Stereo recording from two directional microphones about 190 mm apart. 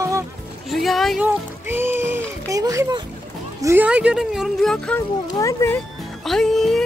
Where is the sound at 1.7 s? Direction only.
10° right (ahead or behind).